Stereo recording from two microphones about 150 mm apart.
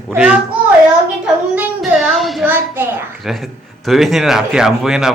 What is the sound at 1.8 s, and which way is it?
Speech, centre (ahead or behind).